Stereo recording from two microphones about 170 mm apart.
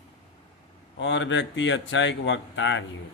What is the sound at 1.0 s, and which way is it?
Speech, 90° left.